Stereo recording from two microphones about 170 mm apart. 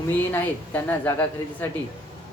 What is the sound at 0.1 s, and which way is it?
Speech, 10° left (ahead or behind).